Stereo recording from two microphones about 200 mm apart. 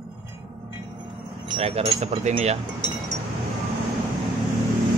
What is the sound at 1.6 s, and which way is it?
A man's voice, 30° right (ahead or behind).